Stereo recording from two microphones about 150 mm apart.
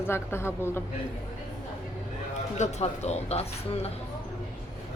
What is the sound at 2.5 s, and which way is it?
Speech, 50° left (ahead or behind).